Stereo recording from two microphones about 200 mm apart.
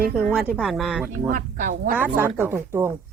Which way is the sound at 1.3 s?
40° right (ahead or behind).